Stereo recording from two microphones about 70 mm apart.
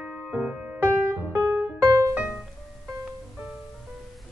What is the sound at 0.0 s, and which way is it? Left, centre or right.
Music, centre.